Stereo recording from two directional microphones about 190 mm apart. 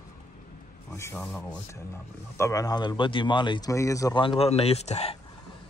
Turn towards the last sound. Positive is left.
turn(degrees=35)  # may be behind; listen again after turning